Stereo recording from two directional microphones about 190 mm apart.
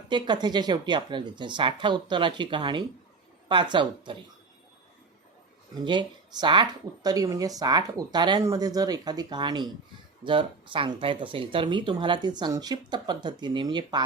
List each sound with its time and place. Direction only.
0.1 s speech: 25° right (ahead or behind)
5.8 s speech: 25° right (ahead or behind)